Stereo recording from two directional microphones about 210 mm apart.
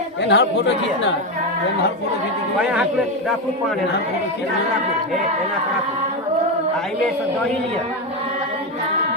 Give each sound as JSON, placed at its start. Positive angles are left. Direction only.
{"t": 0.2, "sound": "speech", "side_deg": 55}